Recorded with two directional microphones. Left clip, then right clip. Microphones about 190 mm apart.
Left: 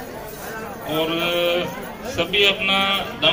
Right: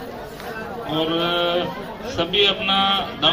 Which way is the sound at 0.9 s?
40° left (ahead or behind).